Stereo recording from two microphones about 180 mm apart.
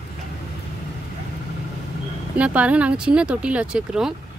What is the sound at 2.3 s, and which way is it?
Speech, 5° right (ahead or behind).